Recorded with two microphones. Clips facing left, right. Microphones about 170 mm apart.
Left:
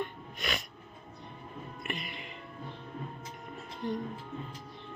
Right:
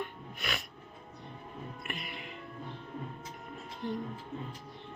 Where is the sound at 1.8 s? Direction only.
Centre (ahead or behind).